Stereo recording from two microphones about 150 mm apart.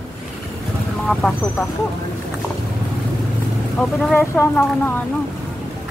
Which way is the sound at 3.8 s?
10° left (ahead or behind).